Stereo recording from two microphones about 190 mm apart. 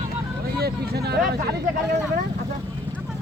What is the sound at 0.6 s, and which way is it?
Vehicle, 55° right (ahead or behind).